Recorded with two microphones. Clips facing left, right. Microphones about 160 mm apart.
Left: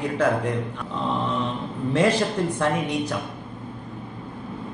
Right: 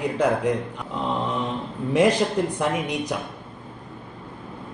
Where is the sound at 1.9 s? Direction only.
15° right (ahead or behind).